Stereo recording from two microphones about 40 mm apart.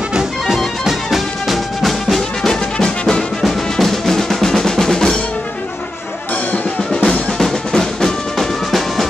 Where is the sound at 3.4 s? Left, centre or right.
Centre.